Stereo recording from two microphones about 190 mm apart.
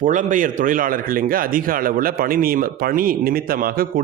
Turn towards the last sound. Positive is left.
turn(degrees=-50)  # may be behind; listen again after turning